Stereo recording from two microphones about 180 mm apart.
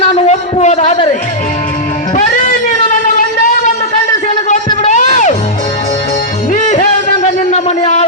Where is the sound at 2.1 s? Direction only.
45° left (ahead or behind).